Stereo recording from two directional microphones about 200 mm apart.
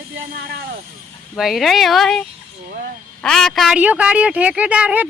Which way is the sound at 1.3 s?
Centre (ahead or behind).